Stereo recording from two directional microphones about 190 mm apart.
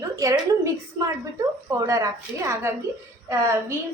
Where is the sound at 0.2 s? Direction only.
15° right (ahead or behind).